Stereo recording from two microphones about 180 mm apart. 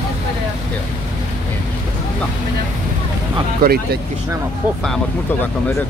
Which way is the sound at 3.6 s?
60° right (ahead or behind).